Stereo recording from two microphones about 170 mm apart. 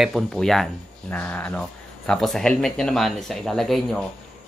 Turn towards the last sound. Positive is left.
turn(degrees=0)  # may be behind; listen again after turning